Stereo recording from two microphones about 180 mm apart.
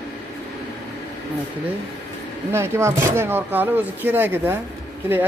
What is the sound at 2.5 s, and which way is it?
Speech, 15° right (ahead or behind).